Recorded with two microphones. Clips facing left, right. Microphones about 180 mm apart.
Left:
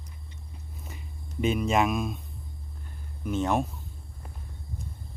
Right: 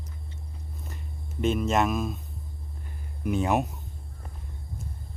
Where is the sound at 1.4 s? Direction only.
Centre (ahead or behind).